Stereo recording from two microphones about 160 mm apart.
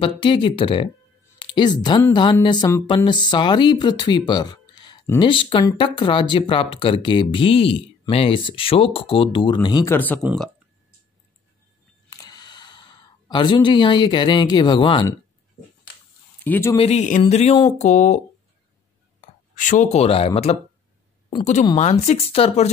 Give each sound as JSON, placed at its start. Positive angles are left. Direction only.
{"t": 0.0, "sound": "speech", "side_deg": 30}
{"t": 9.9, "sound": "speech", "side_deg": 10}
{"t": 12.1, "sound": "a sound", "side_deg": 25}
{"t": 16.4, "sound": "speech", "side_deg": 10}
{"t": 16.7, "sound": "speech", "side_deg": 40}
{"t": 19.5, "sound": "speech", "side_deg": 55}
{"t": 21.7, "sound": "speech", "side_deg": 40}